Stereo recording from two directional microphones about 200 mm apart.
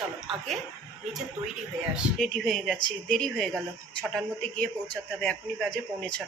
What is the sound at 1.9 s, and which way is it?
A man's voice, centre (ahead or behind).